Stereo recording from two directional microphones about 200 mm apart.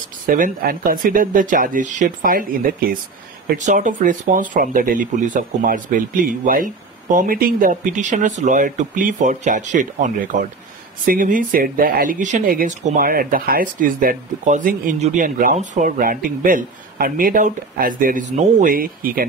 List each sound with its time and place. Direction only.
0.3 s speech: 45° right (ahead or behind)